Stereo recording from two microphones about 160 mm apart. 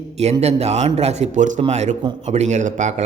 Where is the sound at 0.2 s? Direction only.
40° right (ahead or behind).